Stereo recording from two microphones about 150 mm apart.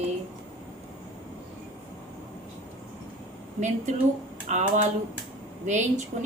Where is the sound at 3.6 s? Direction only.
50° right (ahead or behind).